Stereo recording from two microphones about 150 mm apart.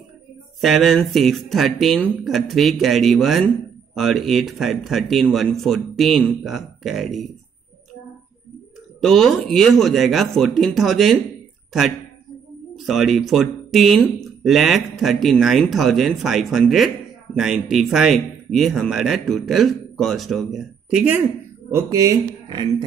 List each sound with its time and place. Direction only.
0.6 s speech: centre (ahead or behind)
9.0 s speech: centre (ahead or behind)
12.7 s speech: centre (ahead or behind)
21.6 s speech: 20° right (ahead or behind)